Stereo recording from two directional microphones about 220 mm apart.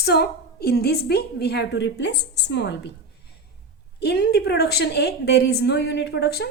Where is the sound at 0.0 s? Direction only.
45° left (ahead or behind).